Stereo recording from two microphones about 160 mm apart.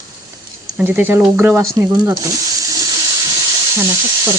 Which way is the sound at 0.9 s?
10° right (ahead or behind).